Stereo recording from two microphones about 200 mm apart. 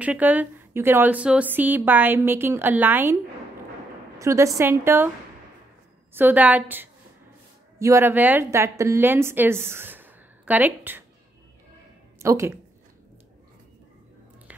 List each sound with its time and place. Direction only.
0.0 s a woman's voice: 10° right (ahead or behind)
4.2 s a woman's voice: 15° right (ahead or behind)
6.1 s a woman's voice: 10° right (ahead or behind)
12.2 s speech: 15° right (ahead or behind)